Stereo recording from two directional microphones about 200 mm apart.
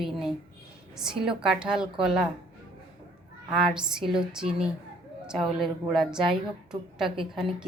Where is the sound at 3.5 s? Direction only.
5° right (ahead or behind).